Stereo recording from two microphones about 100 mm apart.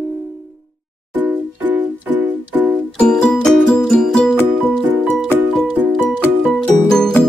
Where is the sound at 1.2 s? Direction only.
15° right (ahead or behind).